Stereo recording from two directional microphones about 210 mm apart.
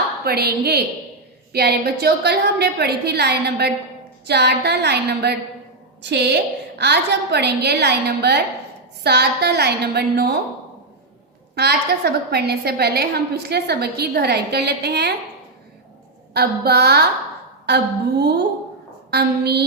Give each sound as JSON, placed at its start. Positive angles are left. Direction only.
{"t": 0.3, "sound": "a woman's voice", "side_deg": -50}
{"t": 11.5, "sound": "a woman's voice", "side_deg": -50}
{"t": 16.3, "sound": "a woman's voice", "side_deg": -50}
{"t": 19.1, "sound": "a woman's voice", "side_deg": -50}